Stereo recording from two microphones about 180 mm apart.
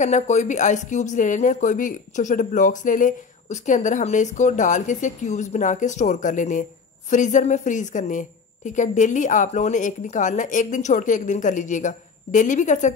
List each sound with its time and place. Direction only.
0.0 s speech: 40° left (ahead or behind)